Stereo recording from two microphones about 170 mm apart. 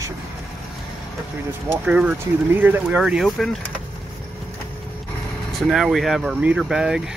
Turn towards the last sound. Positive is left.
turn(degrees=-5)  # may be behind; listen again after turning